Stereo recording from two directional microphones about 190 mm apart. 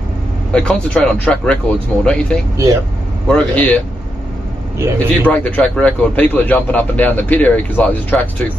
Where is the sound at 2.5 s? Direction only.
15° right (ahead or behind).